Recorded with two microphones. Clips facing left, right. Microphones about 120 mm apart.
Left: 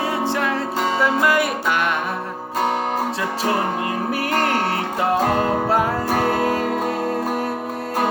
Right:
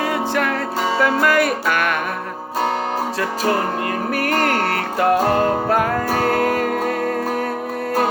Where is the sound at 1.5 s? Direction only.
20° left (ahead or behind).